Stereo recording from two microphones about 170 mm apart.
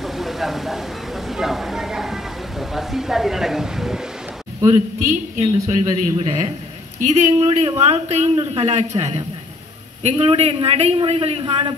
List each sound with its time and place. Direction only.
0.0 s speech: centre (ahead or behind)
5.3 s a man's voice: 50° right (ahead or behind); by 11.7 s 30° right (ahead or behind)